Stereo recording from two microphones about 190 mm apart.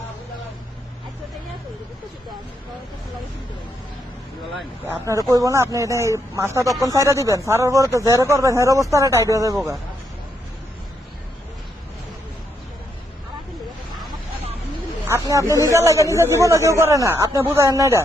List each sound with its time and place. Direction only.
5.3 s speech: 15° right (ahead or behind)
15.0 s speech: 15° right (ahead or behind)